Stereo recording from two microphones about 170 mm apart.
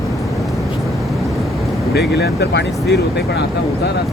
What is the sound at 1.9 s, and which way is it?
Speech, 75° left (ahead or behind).